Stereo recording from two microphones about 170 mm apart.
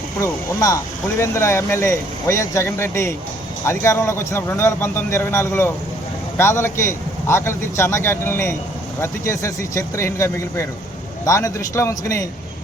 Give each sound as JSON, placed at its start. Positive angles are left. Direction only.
{"t": 0.2, "sound": "speech", "side_deg": 20}